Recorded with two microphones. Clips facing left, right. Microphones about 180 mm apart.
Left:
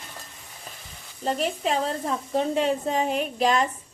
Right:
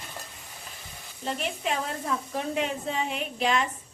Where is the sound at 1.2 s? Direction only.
35° left (ahead or behind).